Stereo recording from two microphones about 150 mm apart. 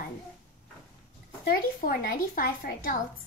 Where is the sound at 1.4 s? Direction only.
75° left (ahead or behind).